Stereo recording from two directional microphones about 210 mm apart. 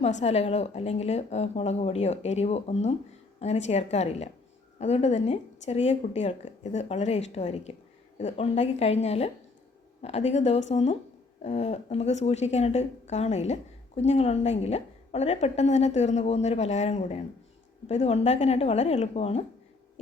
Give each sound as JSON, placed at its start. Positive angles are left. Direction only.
{"t": 0.0, "sound": "speech", "side_deg": 30}